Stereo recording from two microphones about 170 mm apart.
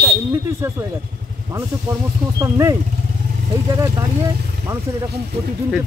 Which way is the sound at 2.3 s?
20° right (ahead or behind).